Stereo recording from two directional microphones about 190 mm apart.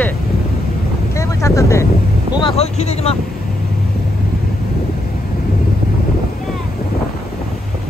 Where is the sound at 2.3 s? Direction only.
30° left (ahead or behind).